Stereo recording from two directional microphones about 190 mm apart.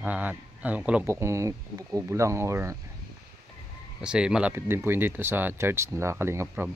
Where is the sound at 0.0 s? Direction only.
10° right (ahead or behind).